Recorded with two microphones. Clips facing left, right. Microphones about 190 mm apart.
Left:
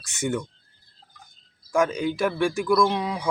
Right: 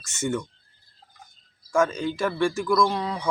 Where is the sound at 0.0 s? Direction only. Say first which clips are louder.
Even; 15° left (ahead or behind).